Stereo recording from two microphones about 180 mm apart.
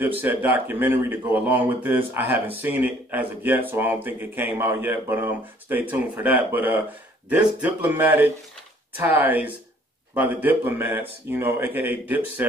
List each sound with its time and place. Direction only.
0.0 s speech: 10° right (ahead or behind)